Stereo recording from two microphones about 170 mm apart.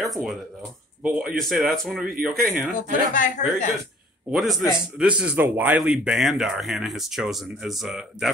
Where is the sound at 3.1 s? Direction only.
50° left (ahead or behind).